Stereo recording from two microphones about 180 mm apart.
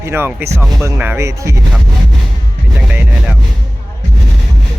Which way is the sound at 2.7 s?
10° right (ahead or behind).